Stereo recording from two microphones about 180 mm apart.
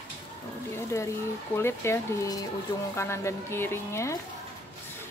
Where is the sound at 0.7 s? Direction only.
15° left (ahead or behind).